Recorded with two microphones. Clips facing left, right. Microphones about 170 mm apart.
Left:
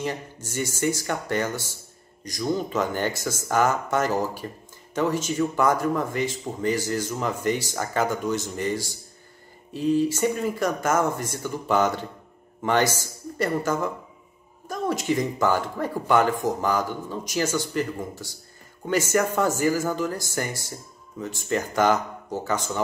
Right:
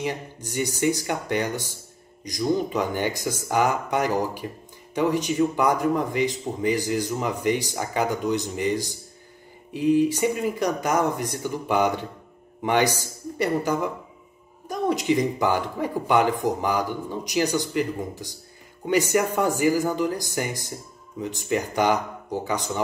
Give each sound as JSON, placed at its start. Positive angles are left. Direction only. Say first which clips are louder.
{"t": 0.0, "sound": "speech", "louder": "right 1 dB", "side_deg": -15}